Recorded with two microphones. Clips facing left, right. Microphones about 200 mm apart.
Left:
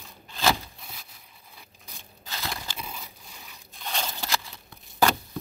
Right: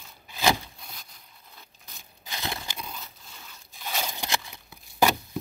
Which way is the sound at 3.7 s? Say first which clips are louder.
Even; 5° right (ahead or behind).